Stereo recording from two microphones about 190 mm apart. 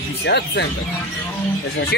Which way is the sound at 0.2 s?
60° left (ahead or behind).